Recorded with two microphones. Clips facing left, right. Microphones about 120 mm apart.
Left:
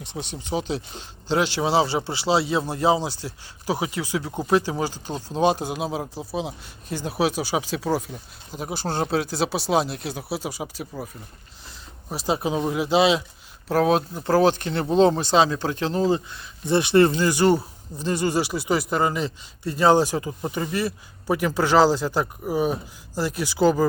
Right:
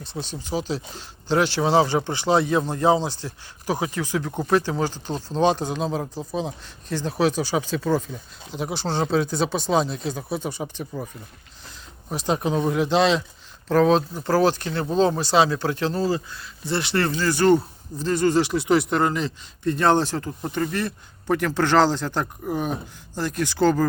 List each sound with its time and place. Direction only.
0.1 s speech: 15° left (ahead or behind)
14.5 s speech: 55° left (ahead or behind)
14.8 s speech: 25° left (ahead or behind); by 23.8 s 10° left (ahead or behind)